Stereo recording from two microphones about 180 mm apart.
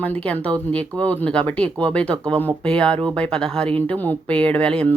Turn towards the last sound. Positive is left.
turn(degrees=5)  # may be behind; listen again after turning